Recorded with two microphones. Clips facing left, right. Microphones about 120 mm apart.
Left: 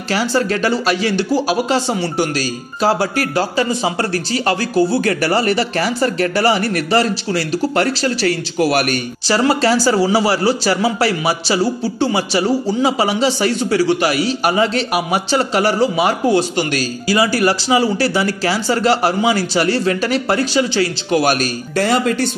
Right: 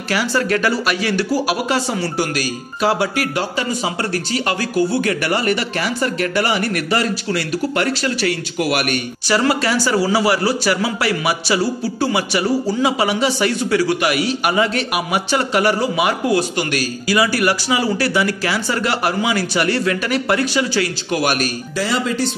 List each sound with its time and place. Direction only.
0.1 s a man's voice: 30° left (ahead or behind)
21.7 s speech: 55° left (ahead or behind)